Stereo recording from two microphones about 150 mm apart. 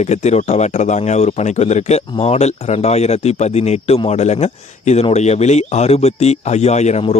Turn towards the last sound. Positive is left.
turn(degrees=45)  # may be behind; listen again after turning